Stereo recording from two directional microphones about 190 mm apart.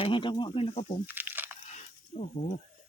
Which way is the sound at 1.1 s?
10° right (ahead or behind).